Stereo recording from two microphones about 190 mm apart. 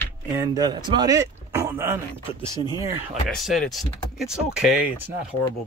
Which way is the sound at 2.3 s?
25° left (ahead or behind).